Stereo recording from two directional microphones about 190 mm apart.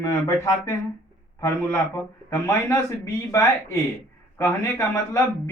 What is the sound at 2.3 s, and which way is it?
A man's voice, 15° left (ahead or behind).